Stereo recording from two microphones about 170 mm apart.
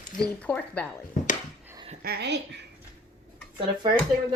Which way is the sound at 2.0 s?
80° right.